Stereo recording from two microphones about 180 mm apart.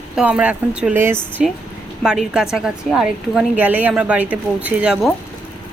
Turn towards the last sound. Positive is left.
turn(degrees=-5)  # may be behind; listen again after turning